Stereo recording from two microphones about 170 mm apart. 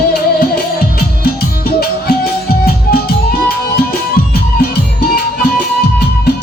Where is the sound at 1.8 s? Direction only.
65° left (ahead or behind).